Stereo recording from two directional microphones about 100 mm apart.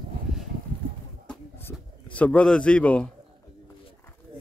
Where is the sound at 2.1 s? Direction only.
15° left (ahead or behind).